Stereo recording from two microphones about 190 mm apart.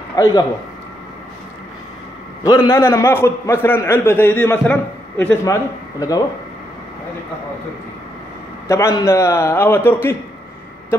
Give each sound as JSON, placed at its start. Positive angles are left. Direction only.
{"t": 0.1, "sound": "speech", "side_deg": 20}
{"t": 2.4, "sound": "a man's voice", "side_deg": 20}
{"t": 8.6, "sound": "a man's voice", "side_deg": 15}